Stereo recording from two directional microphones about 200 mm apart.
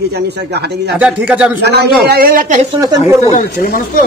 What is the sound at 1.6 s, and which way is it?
A man's voice, 55° right (ahead or behind).